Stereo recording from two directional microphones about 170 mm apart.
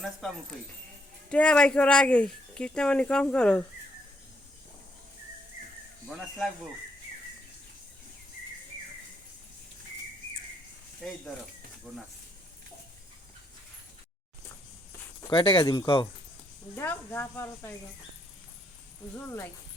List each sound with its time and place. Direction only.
0.0 s speech: centre (ahead or behind)
6.1 s speech: centre (ahead or behind)
11.0 s speech: centre (ahead or behind)
15.3 s speech: 30° left (ahead or behind)
16.7 s speech: 15° left (ahead or behind)